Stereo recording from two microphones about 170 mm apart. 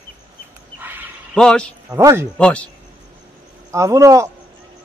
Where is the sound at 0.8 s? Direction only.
10° right (ahead or behind).